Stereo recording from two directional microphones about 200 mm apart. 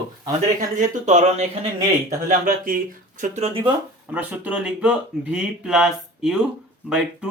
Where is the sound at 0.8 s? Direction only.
35° right (ahead or behind).